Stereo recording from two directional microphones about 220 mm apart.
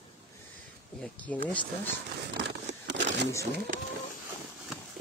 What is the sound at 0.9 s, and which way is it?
Speech, 5° left (ahead or behind).